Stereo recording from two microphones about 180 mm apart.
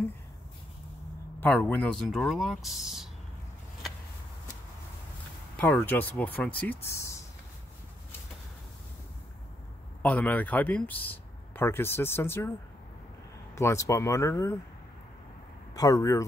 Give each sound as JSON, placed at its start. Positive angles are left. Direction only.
{"t": 1.4, "sound": "speech", "side_deg": 10}
{"t": 5.6, "sound": "speech", "side_deg": 10}
{"t": 10.0, "sound": "speech", "side_deg": 10}
{"t": 13.6, "sound": "speech", "side_deg": 15}
{"t": 15.7, "sound": "speech", "side_deg": 20}